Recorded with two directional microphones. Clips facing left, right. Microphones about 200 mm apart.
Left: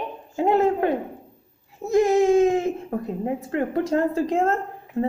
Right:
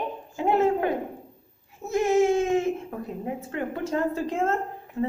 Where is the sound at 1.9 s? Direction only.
35° left (ahead or behind).